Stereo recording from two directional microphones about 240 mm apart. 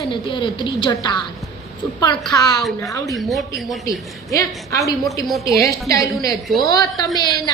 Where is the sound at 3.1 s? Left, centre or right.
Centre.